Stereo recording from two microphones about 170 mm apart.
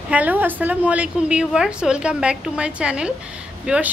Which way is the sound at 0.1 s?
10° right (ahead or behind).